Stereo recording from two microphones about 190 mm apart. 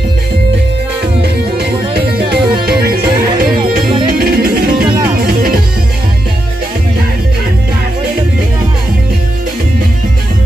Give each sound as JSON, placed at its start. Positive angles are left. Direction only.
{"t": 1.2, "sound": "music", "side_deg": -60}
{"t": 4.8, "sound": "music", "side_deg": -20}
{"t": 5.1, "sound": "music", "side_deg": -50}